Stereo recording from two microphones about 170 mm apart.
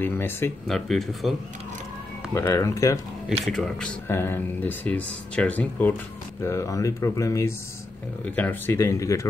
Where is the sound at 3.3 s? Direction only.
5° left (ahead or behind).